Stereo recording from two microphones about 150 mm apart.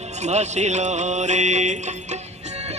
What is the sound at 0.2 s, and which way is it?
Music, 50° right (ahead or behind).